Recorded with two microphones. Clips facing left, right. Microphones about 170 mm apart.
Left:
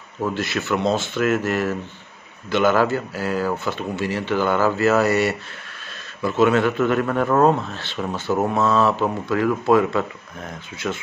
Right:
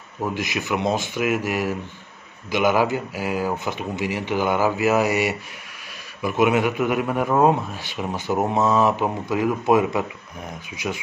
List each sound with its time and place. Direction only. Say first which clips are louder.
0.2 s a man's voice: left 2 dB; 15° right (ahead or behind)